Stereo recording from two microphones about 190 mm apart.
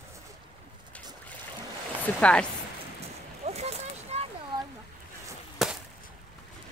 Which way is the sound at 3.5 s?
35° right (ahead or behind).